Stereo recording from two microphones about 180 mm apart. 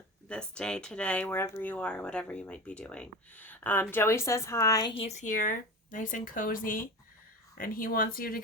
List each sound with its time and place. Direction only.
0.3 s speech: 5° left (ahead or behind); by 5.1 s 30° left (ahead or behind)
5.2 s speech: 50° left (ahead or behind)